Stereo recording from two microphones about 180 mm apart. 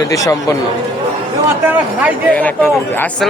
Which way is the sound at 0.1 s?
20° left (ahead or behind).